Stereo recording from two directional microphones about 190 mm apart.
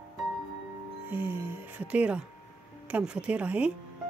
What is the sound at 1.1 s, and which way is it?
Speech, 10° right (ahead or behind).